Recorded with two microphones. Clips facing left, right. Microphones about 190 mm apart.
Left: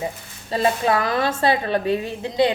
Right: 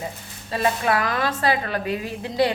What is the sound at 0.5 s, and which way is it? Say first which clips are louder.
A woman's voice: left 2 dB; 25° left (ahead or behind).